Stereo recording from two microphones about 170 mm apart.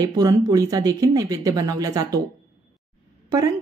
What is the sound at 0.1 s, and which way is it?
Speech, 20° right (ahead or behind).